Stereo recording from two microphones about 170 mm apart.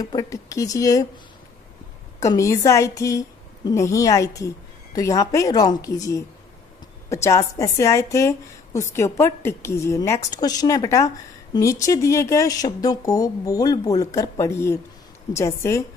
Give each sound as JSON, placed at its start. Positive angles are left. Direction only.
{"t": 0.0, "sound": "speech", "side_deg": 20}
{"t": 2.1, "sound": "a woman's voice", "side_deg": 20}